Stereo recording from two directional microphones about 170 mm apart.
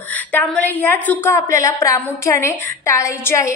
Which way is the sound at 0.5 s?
10° left (ahead or behind).